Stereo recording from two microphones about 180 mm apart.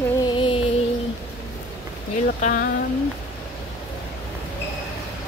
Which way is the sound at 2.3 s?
45° left (ahead or behind).